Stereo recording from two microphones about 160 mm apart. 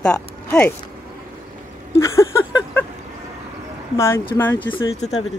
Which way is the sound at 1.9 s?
20° left (ahead or behind).